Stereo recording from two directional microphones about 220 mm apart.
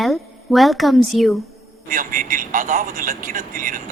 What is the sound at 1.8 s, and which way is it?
Speech, 40° right (ahead or behind).